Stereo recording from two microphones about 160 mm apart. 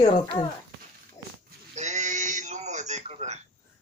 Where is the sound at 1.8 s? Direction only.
50° right (ahead or behind).